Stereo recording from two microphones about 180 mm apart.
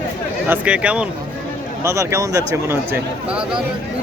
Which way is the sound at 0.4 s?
10° right (ahead or behind).